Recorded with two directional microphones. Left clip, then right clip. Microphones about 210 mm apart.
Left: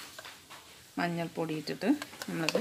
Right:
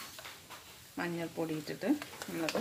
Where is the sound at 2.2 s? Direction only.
30° left (ahead or behind).